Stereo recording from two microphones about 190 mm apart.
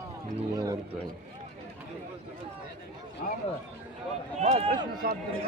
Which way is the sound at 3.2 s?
45° left (ahead or behind).